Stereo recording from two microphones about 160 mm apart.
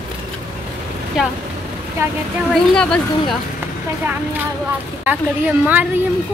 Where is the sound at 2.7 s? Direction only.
5° left (ahead or behind).